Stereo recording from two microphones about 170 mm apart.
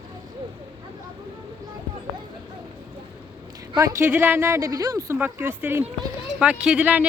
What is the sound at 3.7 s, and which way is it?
Speech, 15° right (ahead or behind).